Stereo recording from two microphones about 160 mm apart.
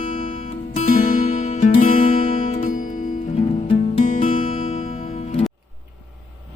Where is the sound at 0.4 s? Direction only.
55° left (ahead or behind).